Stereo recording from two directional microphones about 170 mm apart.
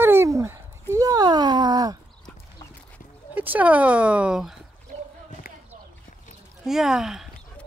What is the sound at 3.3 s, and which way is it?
Speech, 10° right (ahead or behind).